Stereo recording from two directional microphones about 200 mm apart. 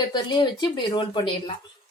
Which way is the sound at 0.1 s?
20° left (ahead or behind).